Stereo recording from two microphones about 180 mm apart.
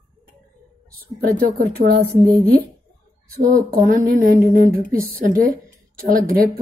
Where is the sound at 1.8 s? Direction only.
50° right (ahead or behind).